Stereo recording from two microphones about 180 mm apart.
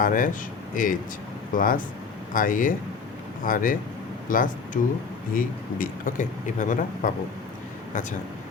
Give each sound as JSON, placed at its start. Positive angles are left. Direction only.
{"t": 0.0, "sound": "speech", "side_deg": 50}